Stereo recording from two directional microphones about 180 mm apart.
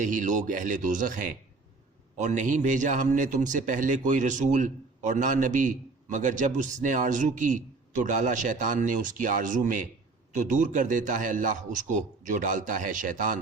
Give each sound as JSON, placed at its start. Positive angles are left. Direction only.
{"t": 0.0, "sound": "a man's voice", "side_deg": -45}